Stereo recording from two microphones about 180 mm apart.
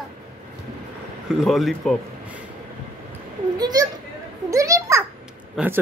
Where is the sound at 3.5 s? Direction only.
20° right (ahead or behind).